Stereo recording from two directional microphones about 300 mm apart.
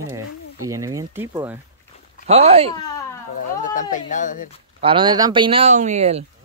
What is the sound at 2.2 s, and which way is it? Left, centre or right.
Speech, centre.